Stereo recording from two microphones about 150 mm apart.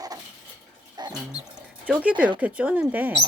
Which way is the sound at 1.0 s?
25° right (ahead or behind).